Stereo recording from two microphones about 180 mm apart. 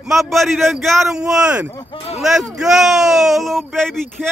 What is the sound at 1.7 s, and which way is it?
Speech, 25° left (ahead or behind).